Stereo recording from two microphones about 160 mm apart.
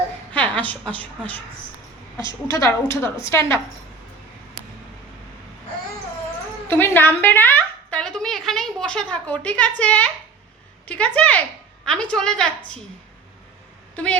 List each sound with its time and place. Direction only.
0.3 s a woman's voice: 10° left (ahead or behind)
2.5 s a woman's voice: 20° left (ahead or behind)
6.7 s a woman's voice: 15° left (ahead or behind)
13.9 s a woman's voice: 5° left (ahead or behind)